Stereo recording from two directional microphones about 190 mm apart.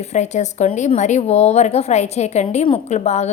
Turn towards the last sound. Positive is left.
turn(degrees=35)  # may be behind; listen again after turning